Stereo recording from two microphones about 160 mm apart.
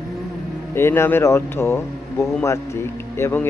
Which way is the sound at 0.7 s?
15° left (ahead or behind).